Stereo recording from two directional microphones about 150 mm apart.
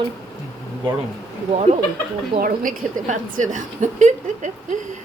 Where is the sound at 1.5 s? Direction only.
45° right (ahead or behind).